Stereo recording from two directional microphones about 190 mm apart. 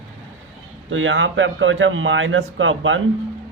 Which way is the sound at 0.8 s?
90° right.